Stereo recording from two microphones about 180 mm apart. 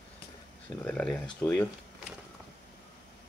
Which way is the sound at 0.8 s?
5° left (ahead or behind).